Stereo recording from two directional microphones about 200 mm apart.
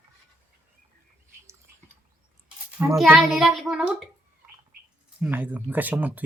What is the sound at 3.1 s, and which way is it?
Speech, centre (ahead or behind).